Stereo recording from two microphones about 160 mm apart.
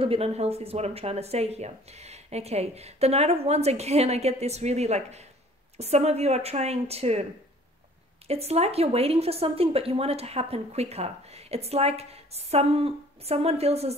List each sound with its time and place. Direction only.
0.0 s speech: 35° right (ahead or behind)
8.3 s speech: 40° right (ahead or behind)